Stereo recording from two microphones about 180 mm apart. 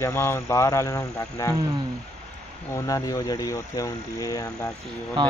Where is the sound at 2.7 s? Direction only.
20° left (ahead or behind).